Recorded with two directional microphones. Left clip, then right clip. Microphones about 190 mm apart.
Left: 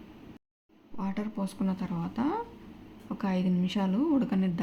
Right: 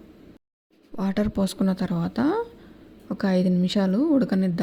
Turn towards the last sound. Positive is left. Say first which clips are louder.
# right 6 dB
turn(degrees=-30)  # may be behind; listen again after turning